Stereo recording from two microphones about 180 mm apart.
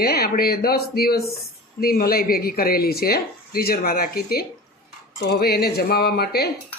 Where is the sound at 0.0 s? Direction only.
60° left (ahead or behind).